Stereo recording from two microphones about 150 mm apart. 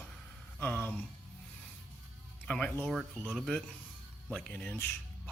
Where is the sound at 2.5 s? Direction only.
5° left (ahead or behind).